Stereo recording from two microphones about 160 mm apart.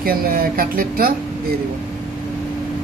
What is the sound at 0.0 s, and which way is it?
Speech, 65° right (ahead or behind).